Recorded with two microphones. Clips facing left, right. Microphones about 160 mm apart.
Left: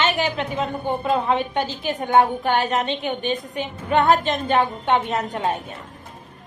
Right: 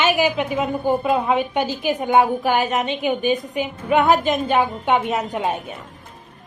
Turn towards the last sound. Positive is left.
turn(degrees=-20)  # may be behind; listen again after turning